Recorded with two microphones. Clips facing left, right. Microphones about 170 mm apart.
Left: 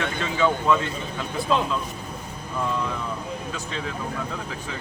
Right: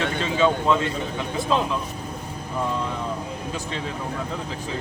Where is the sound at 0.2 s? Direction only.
25° right (ahead or behind).